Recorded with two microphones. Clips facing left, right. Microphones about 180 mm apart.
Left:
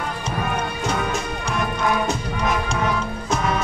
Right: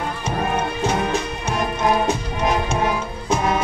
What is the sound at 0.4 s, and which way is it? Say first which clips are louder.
Music: right 4 dB; 25° right (ahead or behind).